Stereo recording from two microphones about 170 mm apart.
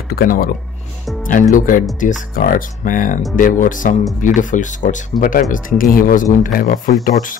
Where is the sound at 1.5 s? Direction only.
50° left (ahead or behind).